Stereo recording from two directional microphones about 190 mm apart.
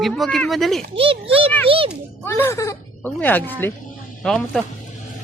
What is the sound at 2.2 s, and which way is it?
Speech, 15° left (ahead or behind).